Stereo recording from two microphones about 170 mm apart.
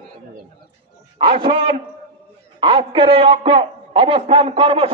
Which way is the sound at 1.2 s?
30° right (ahead or behind).